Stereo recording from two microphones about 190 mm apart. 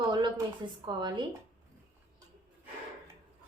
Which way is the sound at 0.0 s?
25° right (ahead or behind).